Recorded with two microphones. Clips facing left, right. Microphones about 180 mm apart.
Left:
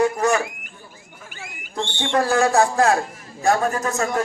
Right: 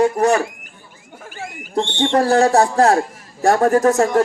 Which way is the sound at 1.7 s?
30° right (ahead or behind).